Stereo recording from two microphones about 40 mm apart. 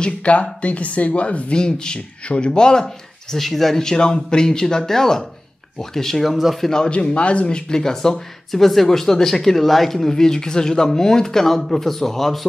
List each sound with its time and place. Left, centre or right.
0.0 s speech: left; by 3.3 s centre
3.3 s speech: centre
6.3 s speech: centre
6.7 s speech: left